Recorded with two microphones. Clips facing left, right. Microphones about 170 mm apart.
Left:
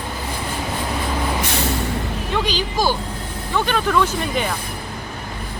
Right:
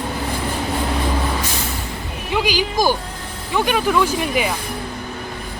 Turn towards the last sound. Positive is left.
turn(degrees=-10)  # may be behind; listen again after turning